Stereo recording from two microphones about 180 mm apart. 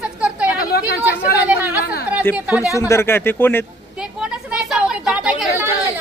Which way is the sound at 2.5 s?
15° left (ahead or behind).